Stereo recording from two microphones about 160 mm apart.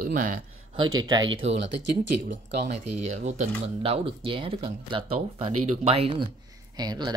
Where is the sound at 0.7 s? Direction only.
25° right (ahead or behind).